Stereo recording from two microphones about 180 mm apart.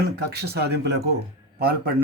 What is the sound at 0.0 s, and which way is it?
Speech, 65° right (ahead or behind).